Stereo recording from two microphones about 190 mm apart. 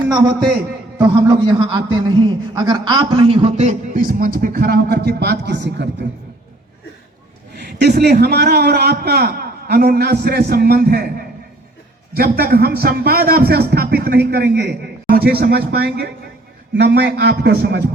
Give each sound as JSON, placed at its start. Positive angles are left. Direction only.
{"t": 1.0, "sound": "a man's voice", "side_deg": -20}
{"t": 7.5, "sound": "speech", "side_deg": -60}
{"t": 12.1, "sound": "speech", "side_deg": -55}